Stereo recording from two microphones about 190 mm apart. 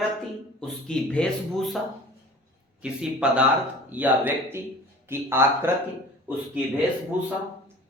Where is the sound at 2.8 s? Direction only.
5° right (ahead or behind).